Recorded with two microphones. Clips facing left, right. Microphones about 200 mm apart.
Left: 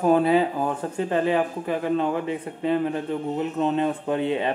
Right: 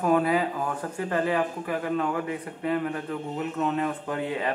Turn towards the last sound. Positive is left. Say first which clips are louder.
# left 5 dB
turn(degrees=25)  # may be behind; listen again after turning